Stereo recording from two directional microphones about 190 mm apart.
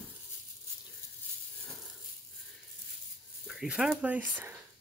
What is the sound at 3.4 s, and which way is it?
Speech, 5° right (ahead or behind).